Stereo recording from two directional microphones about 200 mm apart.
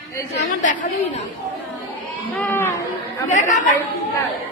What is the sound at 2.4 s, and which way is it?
Chatter, 10° left (ahead or behind).